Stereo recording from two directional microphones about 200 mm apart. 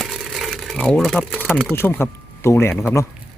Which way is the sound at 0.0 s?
Centre (ahead or behind).